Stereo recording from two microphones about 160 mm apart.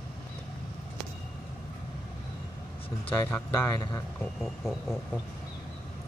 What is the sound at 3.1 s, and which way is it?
Speech, 15° left (ahead or behind).